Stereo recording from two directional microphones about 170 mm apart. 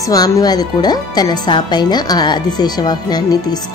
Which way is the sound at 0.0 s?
20° left (ahead or behind).